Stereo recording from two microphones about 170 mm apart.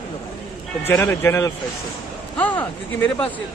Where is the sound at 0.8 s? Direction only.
15° left (ahead or behind).